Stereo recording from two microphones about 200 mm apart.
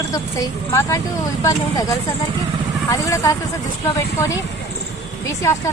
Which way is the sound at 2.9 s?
15° left (ahead or behind).